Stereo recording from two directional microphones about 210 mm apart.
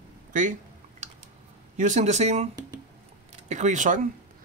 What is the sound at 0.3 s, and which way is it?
Speech, 40° right (ahead or behind).